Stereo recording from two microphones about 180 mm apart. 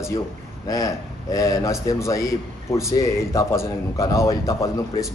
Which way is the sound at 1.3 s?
20° left (ahead or behind).